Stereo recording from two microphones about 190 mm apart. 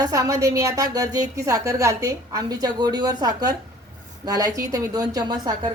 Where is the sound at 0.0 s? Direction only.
15° right (ahead or behind).